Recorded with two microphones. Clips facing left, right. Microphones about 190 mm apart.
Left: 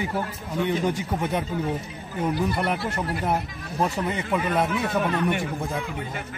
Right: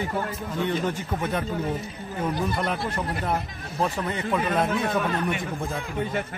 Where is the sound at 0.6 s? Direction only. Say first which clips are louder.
Left 2 dB; 15° left (ahead or behind).